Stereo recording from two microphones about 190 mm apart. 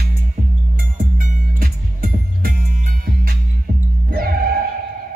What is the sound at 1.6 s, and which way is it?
Music, 50° right (ahead or behind).